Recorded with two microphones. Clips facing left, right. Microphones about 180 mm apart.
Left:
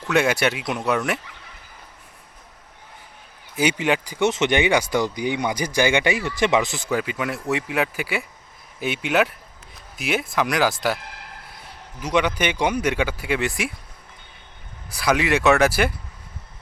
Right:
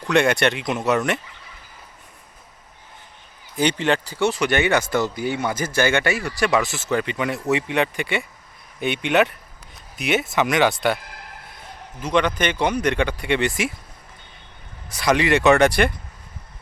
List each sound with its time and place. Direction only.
0.1 s speech: 5° left (ahead or behind)
3.5 s speech: 10° left (ahead or behind)
14.8 s speech: centre (ahead or behind)